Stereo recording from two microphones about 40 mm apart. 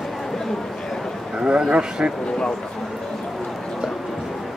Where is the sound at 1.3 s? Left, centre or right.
Right.